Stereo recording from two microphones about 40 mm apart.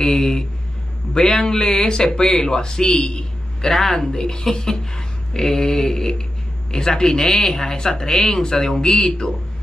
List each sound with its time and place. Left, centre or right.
0.0 s speech: centre
3.7 s a woman's voice: centre
4.1 s speech: centre